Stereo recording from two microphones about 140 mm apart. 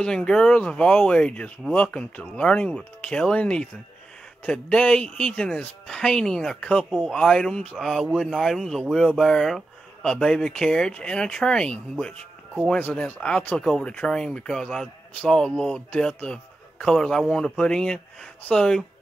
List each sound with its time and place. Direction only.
0.0 s speech: 5° left (ahead or behind)